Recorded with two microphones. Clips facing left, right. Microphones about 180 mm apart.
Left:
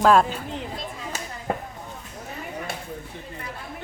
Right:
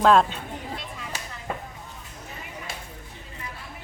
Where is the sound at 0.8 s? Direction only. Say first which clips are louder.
Left 4 dB; 45° left (ahead or behind).